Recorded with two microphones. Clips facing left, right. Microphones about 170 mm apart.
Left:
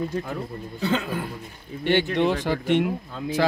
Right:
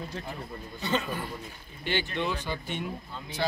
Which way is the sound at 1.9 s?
70° left (ahead or behind).